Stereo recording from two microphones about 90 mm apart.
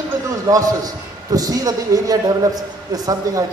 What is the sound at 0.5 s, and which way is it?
A man's voice, 40° right (ahead or behind).